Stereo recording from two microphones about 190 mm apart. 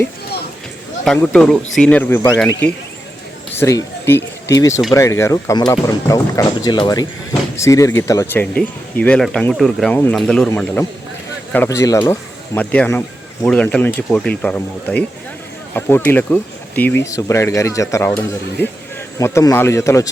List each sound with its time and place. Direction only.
1.0 s speech: 5° left (ahead or behind)